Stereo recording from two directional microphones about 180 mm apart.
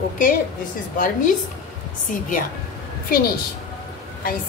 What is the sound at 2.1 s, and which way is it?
Speech, 50° left (ahead or behind).